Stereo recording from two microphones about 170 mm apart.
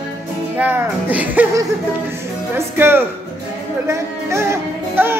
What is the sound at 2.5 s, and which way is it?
Speech, 15° right (ahead or behind).